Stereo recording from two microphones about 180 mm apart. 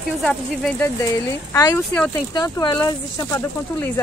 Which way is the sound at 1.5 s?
20° left (ahead or behind).